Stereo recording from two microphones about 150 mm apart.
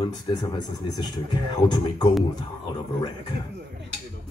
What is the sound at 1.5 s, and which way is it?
Speech, 30° left (ahead or behind).